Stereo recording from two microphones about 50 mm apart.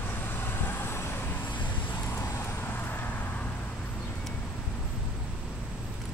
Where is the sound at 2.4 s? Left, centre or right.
Left.